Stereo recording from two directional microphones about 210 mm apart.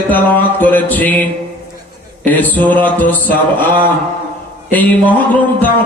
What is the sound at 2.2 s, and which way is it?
Music, 10° left (ahead or behind).